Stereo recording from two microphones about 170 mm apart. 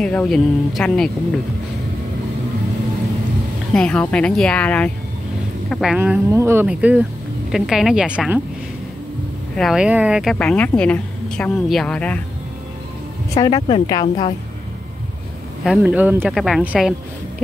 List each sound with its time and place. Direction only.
0.0 s a woman's voice: 5° left (ahead or behind)
3.7 s a woman's voice: 5° left (ahead or behind)
9.6 s a woman's voice: 5° right (ahead or behind)
13.3 s speech: 20° left (ahead or behind)
13.6 s speech: 30° left (ahead or behind)
15.8 s speech: 10° right (ahead or behind)